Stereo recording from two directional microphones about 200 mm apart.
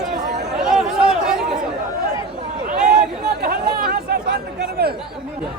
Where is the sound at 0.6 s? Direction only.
5° right (ahead or behind).